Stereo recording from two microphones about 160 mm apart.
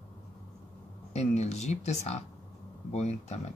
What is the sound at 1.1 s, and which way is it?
Speech, 45° left (ahead or behind).